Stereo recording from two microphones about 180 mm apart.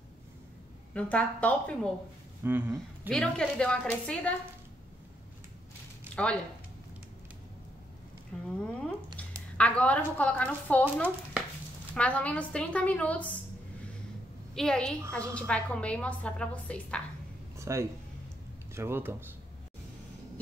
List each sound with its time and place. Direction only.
0.9 s speech: 5° left (ahead or behind)
2.4 s speech: 10° right (ahead or behind)
3.1 s a woman's voice: 5° left (ahead or behind)
6.1 s speech: 5° left (ahead or behind)
8.5 s speech: 5° left (ahead or behind)
14.5 s a woman's voice: 5° left (ahead or behind)
17.6 s a sound: 15° right (ahead or behind)
18.8 s speech: 15° right (ahead or behind)